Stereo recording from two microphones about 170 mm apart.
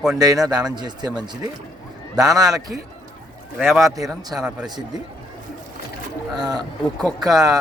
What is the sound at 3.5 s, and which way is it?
Speech, centre (ahead or behind).